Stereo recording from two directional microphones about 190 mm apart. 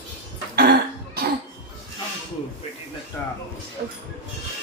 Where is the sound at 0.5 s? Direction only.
55° right (ahead or behind).